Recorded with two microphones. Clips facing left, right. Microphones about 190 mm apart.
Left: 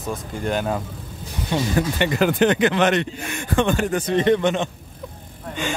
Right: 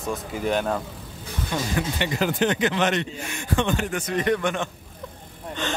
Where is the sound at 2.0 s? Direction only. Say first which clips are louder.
Left 5 dB; 60° left (ahead or behind).